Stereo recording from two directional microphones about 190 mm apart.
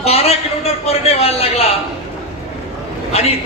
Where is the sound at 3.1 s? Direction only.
30° left (ahead or behind).